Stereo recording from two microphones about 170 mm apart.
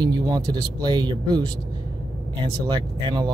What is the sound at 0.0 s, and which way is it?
Speech, 25° right (ahead or behind).